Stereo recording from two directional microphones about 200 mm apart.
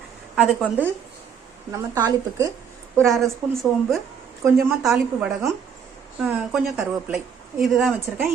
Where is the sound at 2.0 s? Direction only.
20° right (ahead or behind).